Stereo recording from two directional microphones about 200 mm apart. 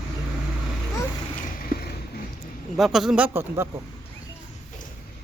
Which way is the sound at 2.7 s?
Centre (ahead or behind).